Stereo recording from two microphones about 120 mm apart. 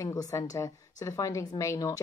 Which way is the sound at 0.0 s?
30° left (ahead or behind).